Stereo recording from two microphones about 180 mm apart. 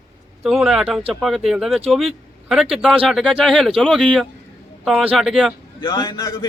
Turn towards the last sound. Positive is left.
turn(degrees=20)  # may be behind; listen again after turning